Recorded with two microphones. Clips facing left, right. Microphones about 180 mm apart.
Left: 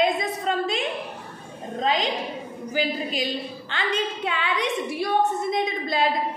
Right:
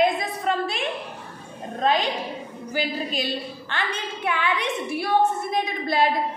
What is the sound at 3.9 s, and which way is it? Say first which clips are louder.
A woman's voice: left 4 dB; 20° left (ahead or behind).